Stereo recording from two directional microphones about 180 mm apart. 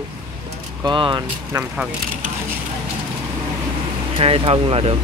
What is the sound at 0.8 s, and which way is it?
Speech, 25° right (ahead or behind).